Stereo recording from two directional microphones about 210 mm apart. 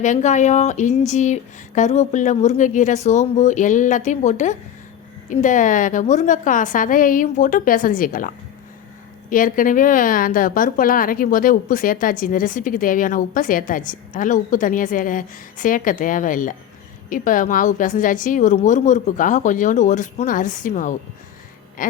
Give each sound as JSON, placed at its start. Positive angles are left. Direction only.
{"t": 0.0, "sound": "a woman's voice", "side_deg": 35}
{"t": 9.3, "sound": "a woman's voice", "side_deg": 40}
{"t": 21.8, "sound": "a sound", "side_deg": 40}